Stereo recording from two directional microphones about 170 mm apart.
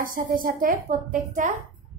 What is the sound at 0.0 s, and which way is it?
Speech, 55° right (ahead or behind).